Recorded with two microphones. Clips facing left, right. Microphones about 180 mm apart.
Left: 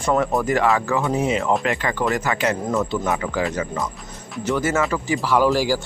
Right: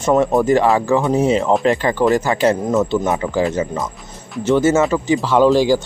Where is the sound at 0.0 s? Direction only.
25° right (ahead or behind).